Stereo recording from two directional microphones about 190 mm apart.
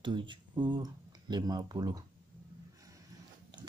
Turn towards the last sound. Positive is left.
turn(degrees=-20)  # may be behind; listen again after turning